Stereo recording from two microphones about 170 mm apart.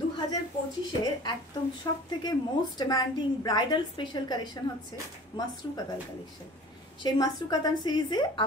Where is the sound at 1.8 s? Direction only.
25° left (ahead or behind).